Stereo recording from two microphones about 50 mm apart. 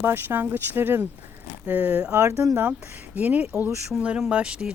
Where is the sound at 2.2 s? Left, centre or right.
Right.